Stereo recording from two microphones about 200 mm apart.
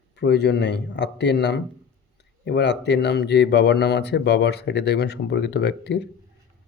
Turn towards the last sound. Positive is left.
turn(degrees=60)  # may be behind; listen again after turning